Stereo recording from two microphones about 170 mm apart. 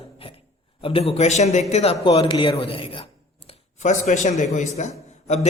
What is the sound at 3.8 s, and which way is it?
A man's voice, 45° left (ahead or behind).